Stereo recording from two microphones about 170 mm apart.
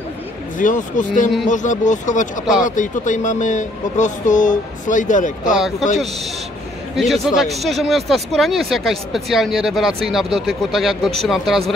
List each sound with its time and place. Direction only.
0.6 s speech: 50° left (ahead or behind)
7.0 s speech: centre (ahead or behind)